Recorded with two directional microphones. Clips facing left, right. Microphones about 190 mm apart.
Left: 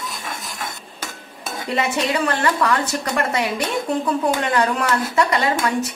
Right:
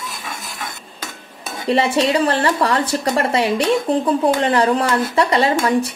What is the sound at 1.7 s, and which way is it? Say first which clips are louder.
Speech: right 5 dB; 30° right (ahead or behind).